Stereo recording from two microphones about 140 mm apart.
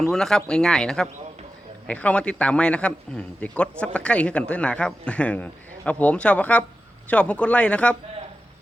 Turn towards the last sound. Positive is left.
turn(degrees=10)  # may be behind; listen again after turning